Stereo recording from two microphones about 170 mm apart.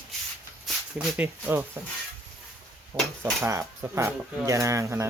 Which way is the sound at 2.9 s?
15° right (ahead or behind).